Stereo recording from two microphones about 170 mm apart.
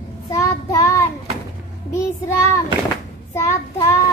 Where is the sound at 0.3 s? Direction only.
20° left (ahead or behind).